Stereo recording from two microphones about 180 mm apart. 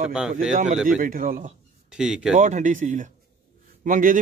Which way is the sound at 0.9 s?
50° right (ahead or behind).